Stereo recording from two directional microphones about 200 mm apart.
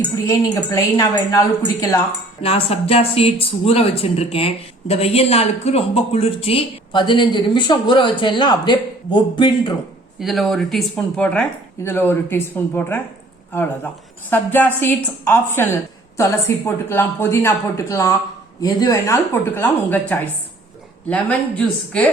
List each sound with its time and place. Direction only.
0.3 s a woman's voice: 15° left (ahead or behind)
2.4 s speech: 30° left (ahead or behind)
10.2 s speech: centre (ahead or behind)
14.3 s a woman's voice: 10° left (ahead or behind)